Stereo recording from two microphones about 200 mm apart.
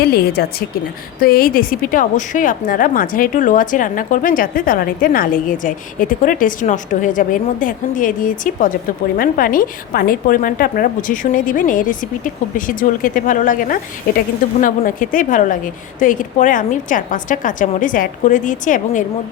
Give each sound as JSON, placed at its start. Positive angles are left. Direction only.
{"t": 0.0, "sound": "a woman's voice", "side_deg": 50}